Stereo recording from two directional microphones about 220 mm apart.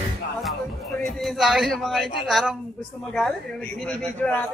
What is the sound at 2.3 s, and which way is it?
A man's voice, centre (ahead or behind).